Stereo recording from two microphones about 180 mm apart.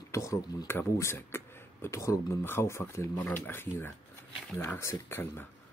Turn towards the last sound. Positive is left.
turn(degrees=10)  # may be behind; listen again after turning